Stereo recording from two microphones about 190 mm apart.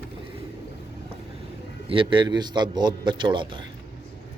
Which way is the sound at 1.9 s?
25° right (ahead or behind).